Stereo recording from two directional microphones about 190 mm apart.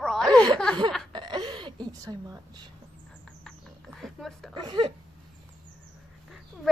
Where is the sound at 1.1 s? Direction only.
25° right (ahead or behind).